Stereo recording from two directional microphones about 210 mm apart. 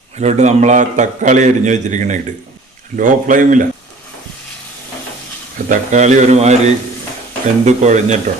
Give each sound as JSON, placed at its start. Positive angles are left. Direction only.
{"t": 0.2, "sound": "a man's voice", "side_deg": -30}
{"t": 5.6, "sound": "a man's voice", "side_deg": -35}